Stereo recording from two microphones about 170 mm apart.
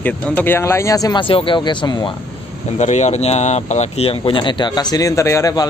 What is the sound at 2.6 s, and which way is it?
Speech, 40° left (ahead or behind).